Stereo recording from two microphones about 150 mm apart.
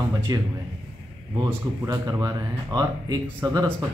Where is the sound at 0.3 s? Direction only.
25° right (ahead or behind).